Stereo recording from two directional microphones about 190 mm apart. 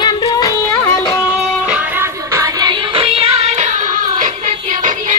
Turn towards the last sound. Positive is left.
turn(degrees=-30)  # may be behind; listen again after turning